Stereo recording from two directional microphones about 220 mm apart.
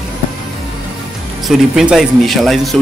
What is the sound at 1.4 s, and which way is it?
Speech, centre (ahead or behind).